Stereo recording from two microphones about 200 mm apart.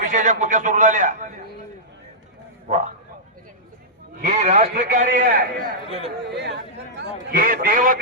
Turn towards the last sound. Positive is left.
turn(degrees=-45)  # may be behind; listen again after turning